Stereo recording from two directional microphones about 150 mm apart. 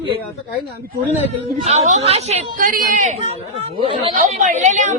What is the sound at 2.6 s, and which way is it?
Speech, 65° right (ahead or behind).